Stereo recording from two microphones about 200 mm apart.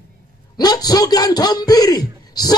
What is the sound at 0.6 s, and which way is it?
A man's voice, 20° left (ahead or behind).